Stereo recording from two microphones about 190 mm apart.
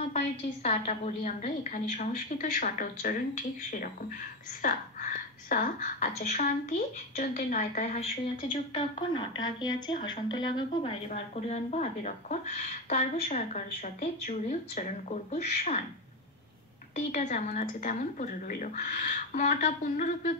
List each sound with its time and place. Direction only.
0.0 s a woman's voice: 35° left (ahead or behind)
8.5 s a woman's voice: 25° left (ahead or behind)
16.9 s a woman's voice: 40° left (ahead or behind)